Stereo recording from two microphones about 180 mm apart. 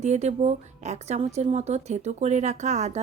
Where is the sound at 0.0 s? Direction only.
40° right (ahead or behind).